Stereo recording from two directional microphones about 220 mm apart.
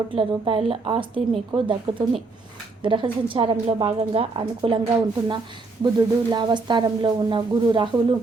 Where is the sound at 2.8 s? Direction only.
20° right (ahead or behind).